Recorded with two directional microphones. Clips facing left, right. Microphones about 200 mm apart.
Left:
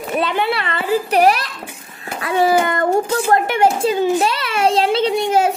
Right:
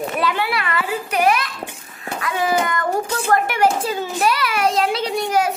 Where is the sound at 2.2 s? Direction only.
30° left (ahead or behind).